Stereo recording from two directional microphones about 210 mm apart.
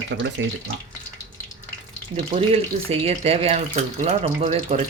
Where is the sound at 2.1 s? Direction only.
30° right (ahead or behind).